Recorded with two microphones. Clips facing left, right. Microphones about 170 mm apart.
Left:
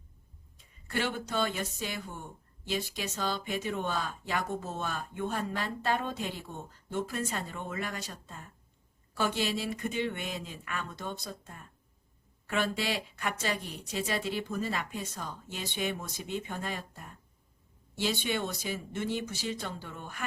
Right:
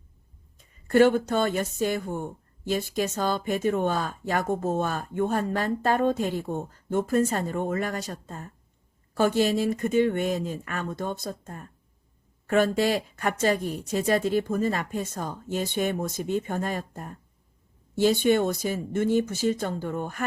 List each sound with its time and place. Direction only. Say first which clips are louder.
0.7 s speech: right 15 dB; 45° right (ahead or behind)